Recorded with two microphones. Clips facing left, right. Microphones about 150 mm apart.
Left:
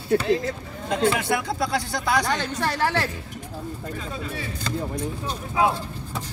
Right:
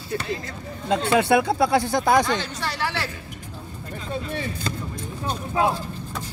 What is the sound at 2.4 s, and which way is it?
Speech, 50° left (ahead or behind).